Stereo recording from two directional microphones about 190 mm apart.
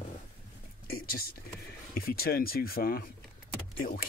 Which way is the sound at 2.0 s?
50° left (ahead or behind).